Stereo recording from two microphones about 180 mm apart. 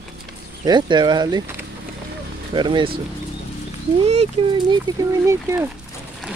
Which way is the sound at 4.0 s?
30° right (ahead or behind).